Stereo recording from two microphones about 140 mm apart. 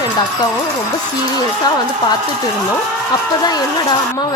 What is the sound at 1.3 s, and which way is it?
Speech, 30° left (ahead or behind).